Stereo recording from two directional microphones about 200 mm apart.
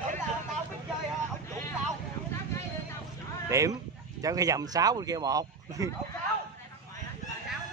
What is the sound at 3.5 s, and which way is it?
Speech, 15° right (ahead or behind).